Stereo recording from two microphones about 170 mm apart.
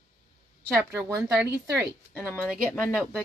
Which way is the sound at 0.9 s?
15° right (ahead or behind).